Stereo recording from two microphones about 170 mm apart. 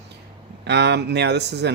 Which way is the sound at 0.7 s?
85° right.